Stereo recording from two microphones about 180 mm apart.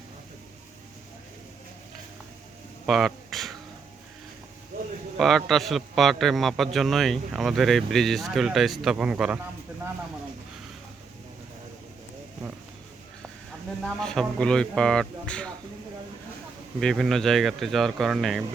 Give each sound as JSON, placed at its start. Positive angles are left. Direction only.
{"t": 2.8, "sound": "a sound", "side_deg": 0}
{"t": 5.1, "sound": "a man's voice", "side_deg": 0}
{"t": 13.8, "sound": "a man's voice", "side_deg": 5}
{"t": 16.8, "sound": "a man's voice", "side_deg": 0}